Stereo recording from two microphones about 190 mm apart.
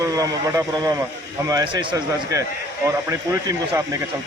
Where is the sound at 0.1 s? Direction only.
20° right (ahead or behind).